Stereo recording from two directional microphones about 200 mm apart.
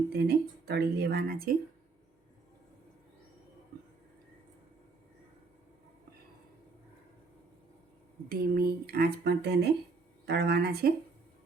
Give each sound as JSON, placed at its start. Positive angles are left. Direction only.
{"t": 0.1, "sound": "speech", "side_deg": -55}
{"t": 8.3, "sound": "speech", "side_deg": -50}